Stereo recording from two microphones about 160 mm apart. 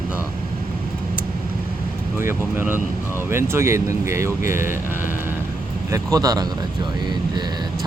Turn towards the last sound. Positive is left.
turn(degrees=-25)  # may be behind; listen again after turning